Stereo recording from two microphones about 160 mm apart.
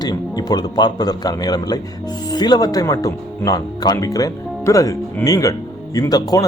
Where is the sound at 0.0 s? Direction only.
25° left (ahead or behind).